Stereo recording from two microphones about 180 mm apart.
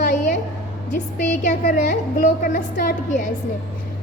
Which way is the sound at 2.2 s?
45° left (ahead or behind).